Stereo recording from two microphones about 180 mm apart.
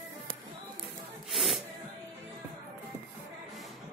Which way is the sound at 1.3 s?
Centre (ahead or behind).